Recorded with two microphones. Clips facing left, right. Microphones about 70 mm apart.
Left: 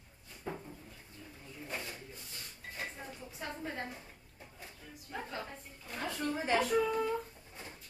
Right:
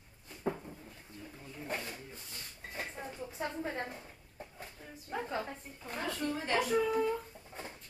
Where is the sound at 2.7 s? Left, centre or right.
Right.